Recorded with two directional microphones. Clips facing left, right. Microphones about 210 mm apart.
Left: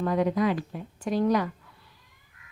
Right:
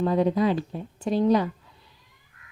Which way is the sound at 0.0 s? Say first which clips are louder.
Right 3 dB; 30° right (ahead or behind).